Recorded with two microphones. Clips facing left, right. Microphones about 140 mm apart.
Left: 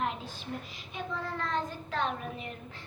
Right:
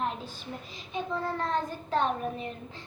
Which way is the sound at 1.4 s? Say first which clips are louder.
Right 3 dB; 40° right (ahead or behind).